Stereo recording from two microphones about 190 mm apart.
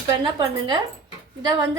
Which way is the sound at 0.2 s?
25° right (ahead or behind).